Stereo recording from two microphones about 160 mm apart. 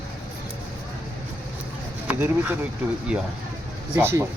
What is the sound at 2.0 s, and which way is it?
Speech, 10° right (ahead or behind).